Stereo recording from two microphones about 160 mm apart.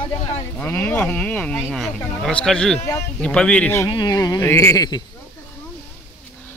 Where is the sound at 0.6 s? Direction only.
10° left (ahead or behind).